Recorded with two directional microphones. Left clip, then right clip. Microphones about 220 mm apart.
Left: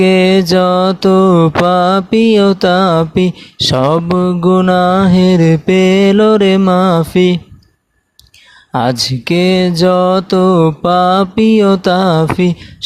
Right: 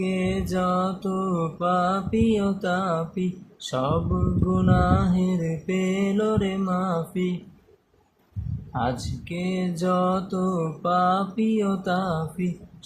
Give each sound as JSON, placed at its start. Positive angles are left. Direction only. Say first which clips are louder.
{"t": 0.0, "sound": "mantra", "louder": "left 19 dB", "side_deg": 45}
{"t": 8.7, "sound": "mantra", "louder": "left 14 dB", "side_deg": 50}